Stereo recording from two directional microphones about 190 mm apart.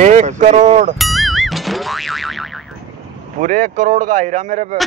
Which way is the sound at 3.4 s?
45° right (ahead or behind).